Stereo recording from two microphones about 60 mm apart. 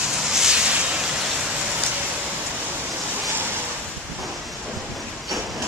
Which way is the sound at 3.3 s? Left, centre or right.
Right.